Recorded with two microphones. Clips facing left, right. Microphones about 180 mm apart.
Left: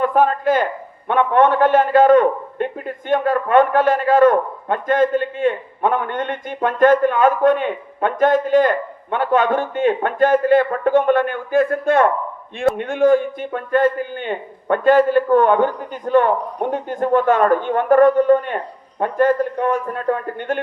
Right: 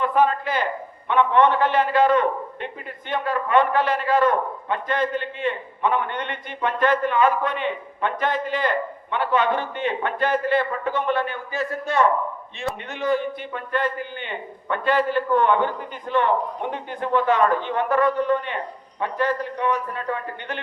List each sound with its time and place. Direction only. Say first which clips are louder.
0.0 s a man's voice: left 4 dB; 45° left (ahead or behind)